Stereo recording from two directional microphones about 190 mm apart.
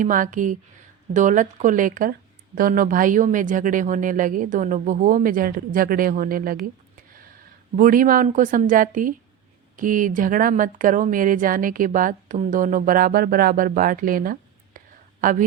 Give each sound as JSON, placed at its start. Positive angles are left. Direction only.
{"t": 0.0, "sound": "speech", "side_deg": -45}
{"t": 7.8, "sound": "a woman's voice", "side_deg": -45}